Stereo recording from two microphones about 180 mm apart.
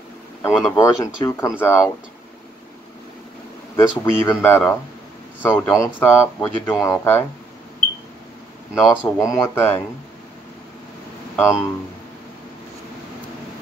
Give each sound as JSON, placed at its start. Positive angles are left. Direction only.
{"t": 0.4, "sound": "speech", "side_deg": 10}
{"t": 3.7, "sound": "speech", "side_deg": 15}
{"t": 8.8, "sound": "speech", "side_deg": 15}
{"t": 11.3, "sound": "speech", "side_deg": 15}